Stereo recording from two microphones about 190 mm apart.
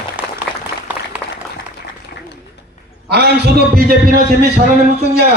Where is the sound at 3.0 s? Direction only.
60° right (ahead or behind).